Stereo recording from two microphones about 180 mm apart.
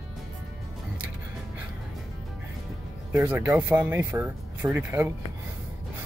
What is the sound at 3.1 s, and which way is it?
Speech, 10° right (ahead or behind).